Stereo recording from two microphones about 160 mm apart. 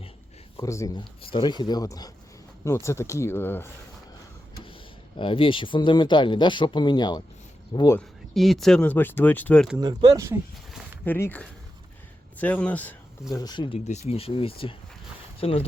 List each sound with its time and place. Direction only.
0.5 s speech: 20° left (ahead or behind)
5.1 s speech: 35° left (ahead or behind)
7.7 s speech: 35° left (ahead or behind)
8.3 s speech: centre (ahead or behind)
9.7 s speech: 25° right (ahead or behind)
11.0 s speech: 10° left (ahead or behind)
13.3 s speech: 25° left (ahead or behind)
13.7 s speech: 45° left (ahead or behind)